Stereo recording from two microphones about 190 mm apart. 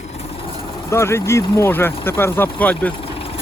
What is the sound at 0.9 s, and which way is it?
Speech, 15° left (ahead or behind).